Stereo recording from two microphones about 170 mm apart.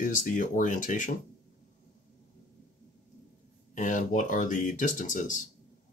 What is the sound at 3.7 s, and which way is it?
Speech, 50° left (ahead or behind).